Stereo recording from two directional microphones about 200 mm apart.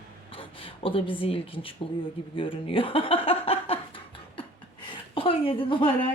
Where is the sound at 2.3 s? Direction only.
25° left (ahead or behind).